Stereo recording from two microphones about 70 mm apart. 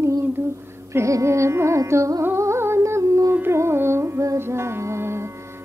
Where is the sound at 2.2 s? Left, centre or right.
Right.